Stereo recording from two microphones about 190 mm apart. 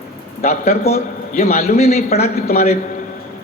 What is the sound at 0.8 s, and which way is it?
A man's voice, 50° left (ahead or behind).